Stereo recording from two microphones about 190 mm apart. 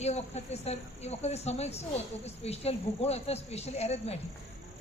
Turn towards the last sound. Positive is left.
turn(degrees=35)  # may be behind; listen again after turning